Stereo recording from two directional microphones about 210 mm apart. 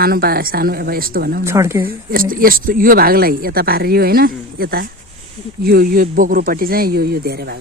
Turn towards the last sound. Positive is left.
turn(degrees=-50)  # may be behind; listen again after turning